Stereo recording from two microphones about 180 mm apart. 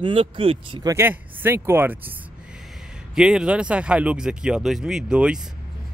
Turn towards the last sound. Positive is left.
turn(degrees=-5)  # may be behind; listen again after turning